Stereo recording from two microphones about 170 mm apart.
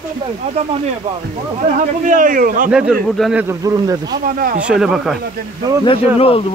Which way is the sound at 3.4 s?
20° right (ahead or behind).